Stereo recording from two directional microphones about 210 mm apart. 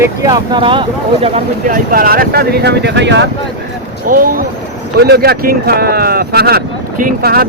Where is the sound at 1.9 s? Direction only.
45° right (ahead or behind).